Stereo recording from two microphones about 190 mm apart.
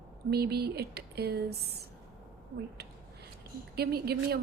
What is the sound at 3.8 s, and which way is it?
Speech, 55° right (ahead or behind).